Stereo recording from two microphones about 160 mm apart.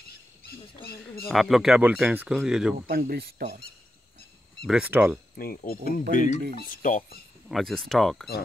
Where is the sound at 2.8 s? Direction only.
65° right (ahead or behind).